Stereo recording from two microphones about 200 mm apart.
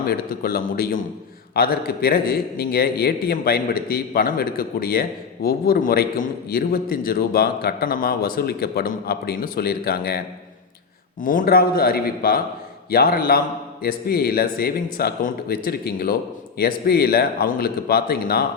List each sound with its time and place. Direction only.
0.1 s a man's voice: 50° left (ahead or behind)
11.2 s a man's voice: 45° left (ahead or behind)